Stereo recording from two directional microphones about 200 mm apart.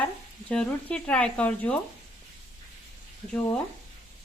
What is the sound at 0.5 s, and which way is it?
Speech, 5° left (ahead or behind).